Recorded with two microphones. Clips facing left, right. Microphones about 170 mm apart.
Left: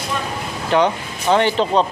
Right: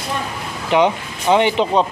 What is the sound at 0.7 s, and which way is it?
Speech, 15° right (ahead or behind).